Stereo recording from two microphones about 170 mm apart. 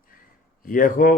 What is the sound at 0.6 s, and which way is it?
Speech, 55° left (ahead or behind).